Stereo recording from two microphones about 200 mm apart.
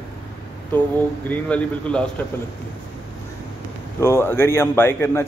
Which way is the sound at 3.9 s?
15° left (ahead or behind).